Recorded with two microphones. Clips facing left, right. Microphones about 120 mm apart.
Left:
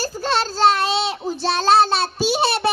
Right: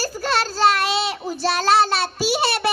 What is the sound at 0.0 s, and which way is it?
Child singing, 20° left (ahead or behind).